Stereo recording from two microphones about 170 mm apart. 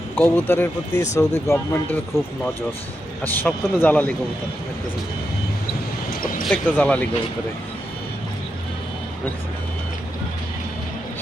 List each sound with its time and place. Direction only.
0.2 s speech: 10° left (ahead or behind)
3.2 s speech: 10° left (ahead or behind)
6.4 s speech: 5° left (ahead or behind)